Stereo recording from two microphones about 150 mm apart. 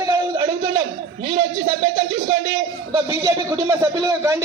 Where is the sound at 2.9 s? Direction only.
25° right (ahead or behind).